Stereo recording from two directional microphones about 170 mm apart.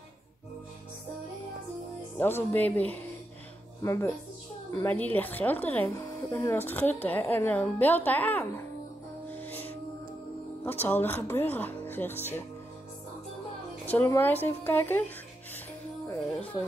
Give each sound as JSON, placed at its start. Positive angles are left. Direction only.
{"t": 2.1, "sound": "speech", "side_deg": 10}
{"t": 9.3, "sound": "music", "side_deg": 10}
{"t": 10.6, "sound": "speech", "side_deg": 10}
{"t": 13.8, "sound": "speech", "side_deg": 15}